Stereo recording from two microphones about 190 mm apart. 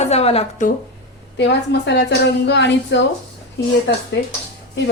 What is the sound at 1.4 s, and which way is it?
A woman's voice, 65° left (ahead or behind).